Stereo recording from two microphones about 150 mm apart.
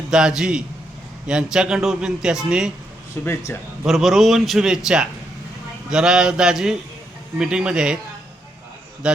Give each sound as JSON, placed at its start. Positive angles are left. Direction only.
{"t": 0.1, "sound": "a man's voice", "side_deg": -5}
{"t": 3.2, "sound": "a man's voice", "side_deg": 15}
{"t": 3.8, "sound": "a man's voice", "side_deg": 0}
{"t": 9.0, "sound": "a man's voice", "side_deg": -5}